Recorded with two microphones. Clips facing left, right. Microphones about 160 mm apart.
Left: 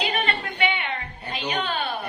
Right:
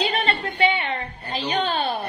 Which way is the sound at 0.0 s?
30° right (ahead or behind).